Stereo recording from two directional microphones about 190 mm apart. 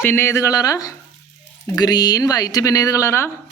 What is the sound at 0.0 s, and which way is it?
Speech, 10° left (ahead or behind).